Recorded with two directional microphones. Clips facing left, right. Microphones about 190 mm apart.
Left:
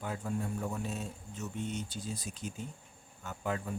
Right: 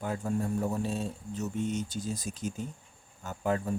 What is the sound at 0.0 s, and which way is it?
Speech, 45° right (ahead or behind).